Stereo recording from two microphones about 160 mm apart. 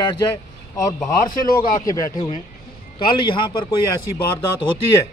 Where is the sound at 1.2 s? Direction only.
60° left (ahead or behind).